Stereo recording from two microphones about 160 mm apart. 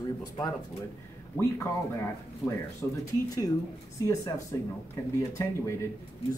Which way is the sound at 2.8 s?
15° left (ahead or behind).